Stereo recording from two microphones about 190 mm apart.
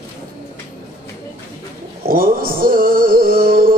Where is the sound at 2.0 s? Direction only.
50° right (ahead or behind).